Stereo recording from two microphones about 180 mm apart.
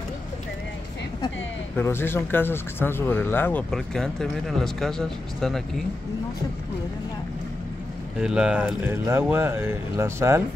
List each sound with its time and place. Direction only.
1.8 s speech: 10° left (ahead or behind)
8.2 s speech: 5° right (ahead or behind)